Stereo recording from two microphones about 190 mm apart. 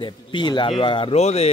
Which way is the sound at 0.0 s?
25° left (ahead or behind).